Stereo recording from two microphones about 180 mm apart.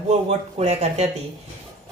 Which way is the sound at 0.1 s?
35° right (ahead or behind).